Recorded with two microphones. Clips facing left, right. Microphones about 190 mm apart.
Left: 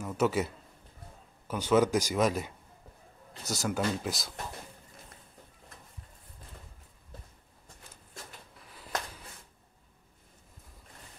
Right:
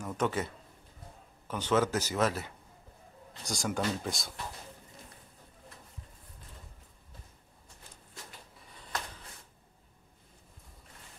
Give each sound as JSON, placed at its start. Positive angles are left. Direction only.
{"t": 0.0, "sound": "speech", "side_deg": 5}
{"t": 1.5, "sound": "speech", "side_deg": 10}
{"t": 3.4, "sound": "speech", "side_deg": 5}
{"t": 8.5, "sound": "a sound", "side_deg": 0}